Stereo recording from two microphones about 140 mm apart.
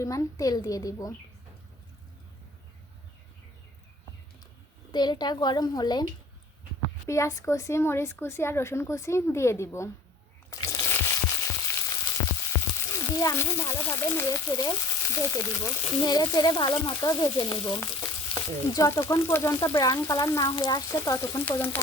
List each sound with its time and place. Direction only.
0.0 s speech: 25° left (ahead or behind)
4.9 s a child's voice: 30° left (ahead or behind)
7.1 s speech: 20° left (ahead or behind)
10.5 s frying: 25° left (ahead or behind)
13.0 s a child's voice: 25° left (ahead or behind)